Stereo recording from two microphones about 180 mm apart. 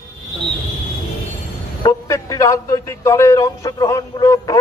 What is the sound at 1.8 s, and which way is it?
A man's voice, 15° left (ahead or behind).